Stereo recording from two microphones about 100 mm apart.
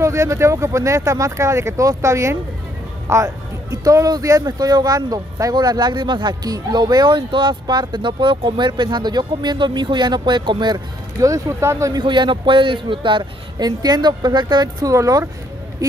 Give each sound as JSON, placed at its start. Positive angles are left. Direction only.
{"t": 0.0, "sound": "speech", "side_deg": -30}
{"t": 11.9, "sound": "speech", "side_deg": -50}